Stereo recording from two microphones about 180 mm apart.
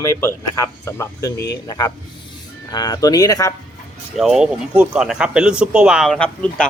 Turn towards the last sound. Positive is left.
turn(degrees=5)  # may be behind; listen again after turning